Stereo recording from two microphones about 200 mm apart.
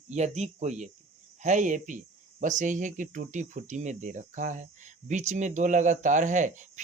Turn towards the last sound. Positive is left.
turn(degrees=-40)  # may be behind; listen again after turning